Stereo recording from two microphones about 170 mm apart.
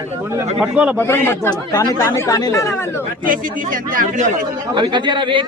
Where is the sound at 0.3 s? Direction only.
5° right (ahead or behind).